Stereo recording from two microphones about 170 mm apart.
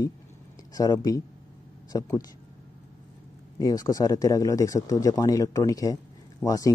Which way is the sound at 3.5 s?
20° left (ahead or behind).